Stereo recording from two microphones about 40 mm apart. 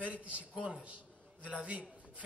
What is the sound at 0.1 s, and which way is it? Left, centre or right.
A man's voice, right.